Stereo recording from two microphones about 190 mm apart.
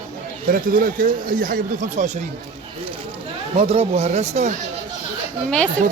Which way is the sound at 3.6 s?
30° right (ahead or behind).